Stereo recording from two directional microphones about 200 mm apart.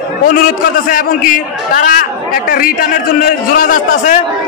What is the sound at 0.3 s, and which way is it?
A man's voice, 45° left (ahead or behind).